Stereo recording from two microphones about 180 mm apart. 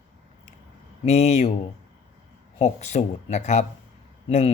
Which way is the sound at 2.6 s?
40° left (ahead or behind).